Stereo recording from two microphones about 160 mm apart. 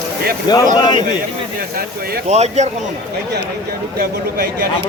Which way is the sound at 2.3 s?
45° right (ahead or behind).